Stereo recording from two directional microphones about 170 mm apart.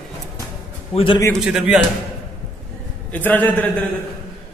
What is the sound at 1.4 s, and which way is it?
Speech, 5° right (ahead or behind).